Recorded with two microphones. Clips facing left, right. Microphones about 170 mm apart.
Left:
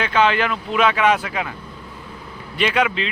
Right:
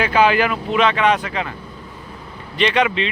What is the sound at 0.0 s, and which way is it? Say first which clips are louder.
Speech: right 3 dB; 10° right (ahead or behind).